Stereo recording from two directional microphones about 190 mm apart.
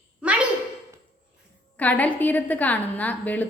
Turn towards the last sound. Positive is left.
turn(degrees=10)  # may be behind; listen again after turning